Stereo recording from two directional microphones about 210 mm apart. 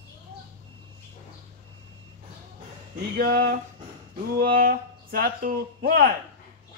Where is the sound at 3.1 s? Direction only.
45° right (ahead or behind).